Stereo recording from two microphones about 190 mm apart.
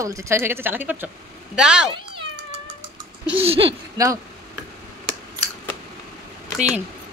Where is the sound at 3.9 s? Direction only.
20° right (ahead or behind).